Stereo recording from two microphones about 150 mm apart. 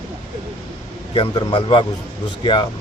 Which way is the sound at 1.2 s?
35° left (ahead or behind).